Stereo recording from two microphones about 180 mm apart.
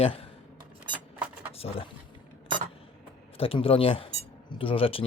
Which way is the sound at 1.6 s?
35° left (ahead or behind).